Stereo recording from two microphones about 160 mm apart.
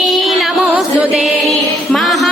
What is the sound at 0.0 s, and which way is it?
Music, centre (ahead or behind).